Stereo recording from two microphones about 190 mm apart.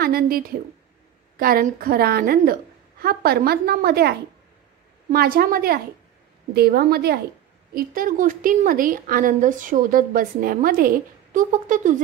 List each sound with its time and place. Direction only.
0.0 s a woman's voice: 50° right (ahead or behind)
5.1 s a woman's voice: 50° right (ahead or behind)